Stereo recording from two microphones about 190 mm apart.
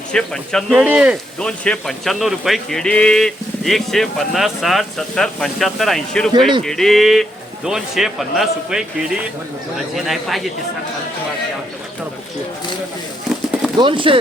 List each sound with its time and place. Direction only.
0.1 s speech: 5° left (ahead or behind)
1.4 s speech: 5° left (ahead or behind)
13.7 s speech: 25° right (ahead or behind)